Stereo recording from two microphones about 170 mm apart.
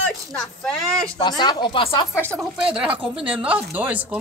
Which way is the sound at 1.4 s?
25° left (ahead or behind).